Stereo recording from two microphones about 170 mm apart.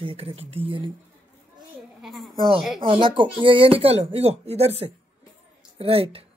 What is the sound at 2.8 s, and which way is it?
Speech, 30° right (ahead or behind).